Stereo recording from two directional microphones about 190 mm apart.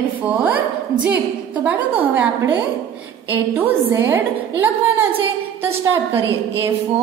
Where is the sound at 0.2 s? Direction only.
10° right (ahead or behind).